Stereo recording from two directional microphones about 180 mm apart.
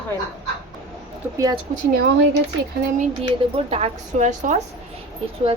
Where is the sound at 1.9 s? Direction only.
60° right (ahead or behind).